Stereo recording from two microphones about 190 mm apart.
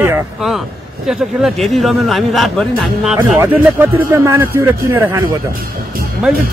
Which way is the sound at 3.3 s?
10° right (ahead or behind).